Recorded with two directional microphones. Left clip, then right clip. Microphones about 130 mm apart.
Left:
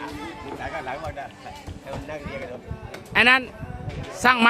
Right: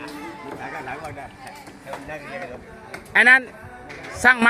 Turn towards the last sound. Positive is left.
turn(degrees=-10)  # may be behind; listen again after turning